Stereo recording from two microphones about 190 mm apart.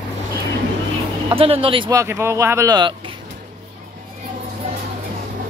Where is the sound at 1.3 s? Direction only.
30° right (ahead or behind).